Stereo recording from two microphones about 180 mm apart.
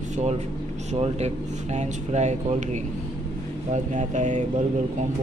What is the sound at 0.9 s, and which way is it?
Speech, 35° right (ahead or behind).